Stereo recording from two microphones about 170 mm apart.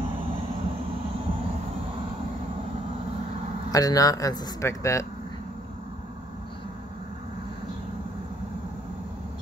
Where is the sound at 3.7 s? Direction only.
20° left (ahead or behind).